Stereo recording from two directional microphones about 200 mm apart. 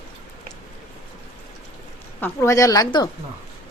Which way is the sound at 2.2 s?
15° left (ahead or behind).